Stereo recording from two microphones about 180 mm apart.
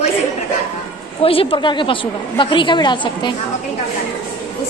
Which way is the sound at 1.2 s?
30° left (ahead or behind).